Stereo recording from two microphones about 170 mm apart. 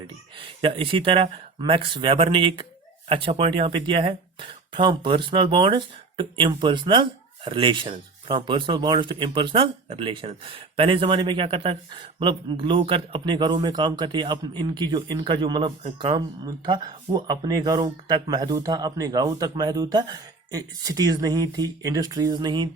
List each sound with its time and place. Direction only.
0.3 s speech: 30° right (ahead or behind)